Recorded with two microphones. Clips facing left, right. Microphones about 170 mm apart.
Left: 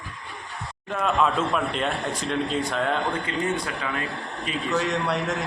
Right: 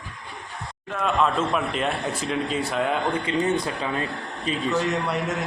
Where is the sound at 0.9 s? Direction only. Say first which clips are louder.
Even; centre (ahead or behind).